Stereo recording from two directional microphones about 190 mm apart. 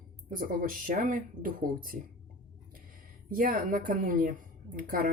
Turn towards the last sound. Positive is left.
turn(degrees=-50)  # may be behind; listen again after turning